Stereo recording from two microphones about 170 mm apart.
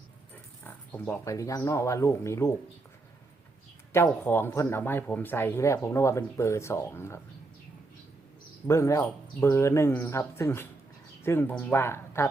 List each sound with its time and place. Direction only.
0.6 s speech: 10° left (ahead or behind)
3.9 s speech: 15° left (ahead or behind)
8.6 s speech: 15° left (ahead or behind)